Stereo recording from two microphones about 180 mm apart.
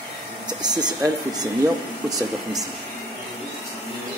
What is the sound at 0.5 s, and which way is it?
Speech, 25° right (ahead or behind).